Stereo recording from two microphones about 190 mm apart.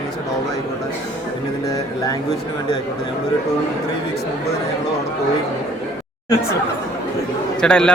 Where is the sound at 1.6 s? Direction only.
20° left (ahead or behind).